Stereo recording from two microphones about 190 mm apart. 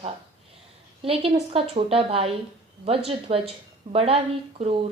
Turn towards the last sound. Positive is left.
turn(degrees=-30)  # may be behind; listen again after turning